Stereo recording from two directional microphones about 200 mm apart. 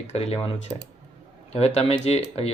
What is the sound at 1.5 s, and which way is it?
Speech, 30° left (ahead or behind).